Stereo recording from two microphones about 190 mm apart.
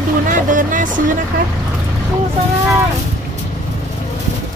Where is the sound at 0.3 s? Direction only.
45° right (ahead or behind).